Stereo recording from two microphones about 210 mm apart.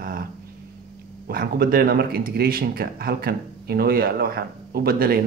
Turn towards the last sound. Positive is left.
turn(degrees=-45)  # may be behind; listen again after turning